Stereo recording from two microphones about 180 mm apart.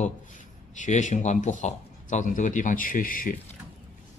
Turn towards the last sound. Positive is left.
turn(degrees=50)  # may be behind; listen again after turning